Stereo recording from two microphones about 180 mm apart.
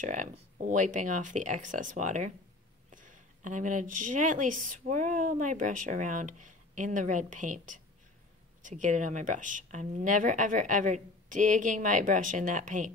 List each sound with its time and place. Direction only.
0.0 s speech: 45° right (ahead or behind)